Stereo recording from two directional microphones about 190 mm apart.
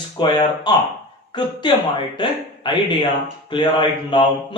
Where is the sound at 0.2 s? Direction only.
25° left (ahead or behind).